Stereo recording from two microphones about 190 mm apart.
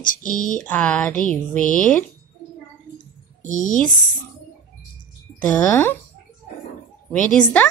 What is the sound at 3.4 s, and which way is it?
Speech, 40° left (ahead or behind).